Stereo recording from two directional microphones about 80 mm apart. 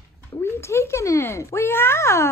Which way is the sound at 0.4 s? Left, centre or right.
Left.